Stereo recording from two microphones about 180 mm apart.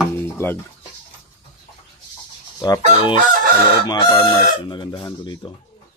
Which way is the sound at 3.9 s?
20° left (ahead or behind).